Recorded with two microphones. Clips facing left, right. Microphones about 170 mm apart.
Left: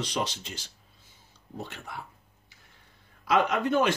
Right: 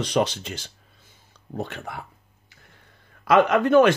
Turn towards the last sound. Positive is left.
turn(degrees=-65)  # may be behind; listen again after turning